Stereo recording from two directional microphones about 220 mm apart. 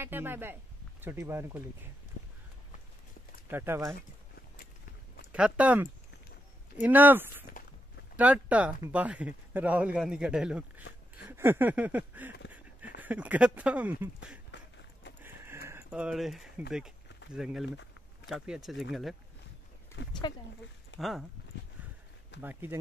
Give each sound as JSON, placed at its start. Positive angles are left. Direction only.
{"t": 0.0, "sound": "speech", "side_deg": -10}
{"t": 3.4, "sound": "speech", "side_deg": -10}
{"t": 5.3, "sound": "speech", "side_deg": -5}
{"t": 11.2, "sound": "a sound", "side_deg": -10}
{"t": 13.0, "sound": "speech", "side_deg": -5}
{"t": 14.5, "sound": "run", "side_deg": 50}
{"t": 15.2, "sound": "a sound", "side_deg": -10}
{"t": 17.3, "sound": "speech", "side_deg": -5}
{"t": 17.6, "sound": "a sound", "side_deg": 55}
{"t": 18.3, "sound": "speech", "side_deg": -5}
{"t": 20.0, "sound": "speech", "side_deg": 55}
{"t": 21.0, "sound": "speech", "side_deg": 0}
{"t": 22.4, "sound": "speech", "side_deg": -10}